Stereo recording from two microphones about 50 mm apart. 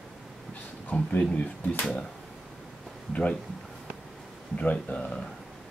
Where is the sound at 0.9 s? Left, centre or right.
Left.